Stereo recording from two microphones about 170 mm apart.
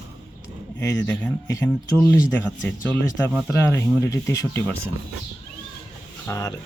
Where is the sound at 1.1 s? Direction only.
15° left (ahead or behind).